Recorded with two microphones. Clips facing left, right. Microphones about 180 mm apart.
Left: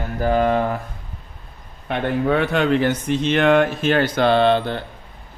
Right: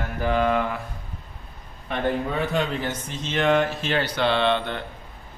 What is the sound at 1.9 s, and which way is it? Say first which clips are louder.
Speech: left 5 dB; 75° left (ahead or behind).